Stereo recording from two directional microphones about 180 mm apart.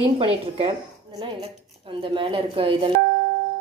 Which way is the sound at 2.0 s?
30° right (ahead or behind).